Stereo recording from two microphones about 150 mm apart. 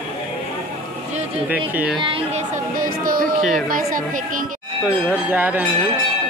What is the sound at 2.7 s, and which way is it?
Speech, 70° right (ahead or behind).